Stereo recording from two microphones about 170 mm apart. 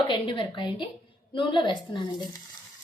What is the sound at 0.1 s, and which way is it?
Speech, 30° left (ahead or behind).